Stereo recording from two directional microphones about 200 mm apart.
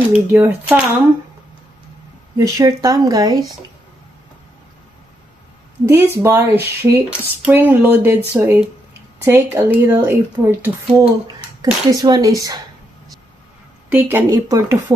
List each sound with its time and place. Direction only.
0.1 s speech: 10° right (ahead or behind)
2.3 s speech: 20° right (ahead or behind)
5.9 s speech: 15° right (ahead or behind)
13.8 s speech: 10° right (ahead or behind)